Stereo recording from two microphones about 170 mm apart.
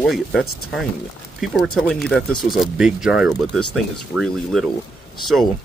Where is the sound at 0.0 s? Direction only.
Centre (ahead or behind).